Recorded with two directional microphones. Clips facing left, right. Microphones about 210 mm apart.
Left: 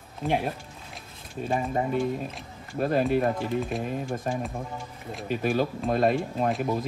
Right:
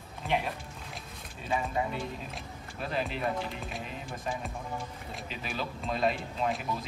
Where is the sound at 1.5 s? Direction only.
50° left (ahead or behind).